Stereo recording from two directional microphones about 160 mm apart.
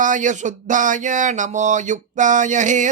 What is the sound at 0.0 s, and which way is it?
Speech, 50° right (ahead or behind).